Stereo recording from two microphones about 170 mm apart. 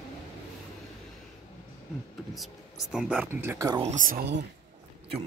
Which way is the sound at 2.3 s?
Centre (ahead or behind).